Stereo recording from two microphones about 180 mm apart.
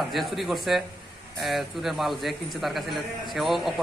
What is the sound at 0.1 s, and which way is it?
A man's voice, centre (ahead or behind).